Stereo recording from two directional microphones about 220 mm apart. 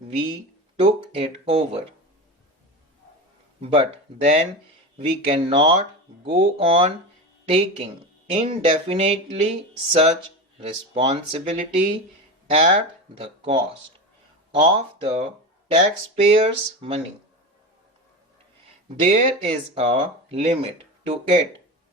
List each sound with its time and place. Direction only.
0.8 s speech: 25° right (ahead or behind)
3.6 s speech: 25° right (ahead or behind)
16.3 s speech: 25° right (ahead or behind)
18.9 s speech: 30° right (ahead or behind)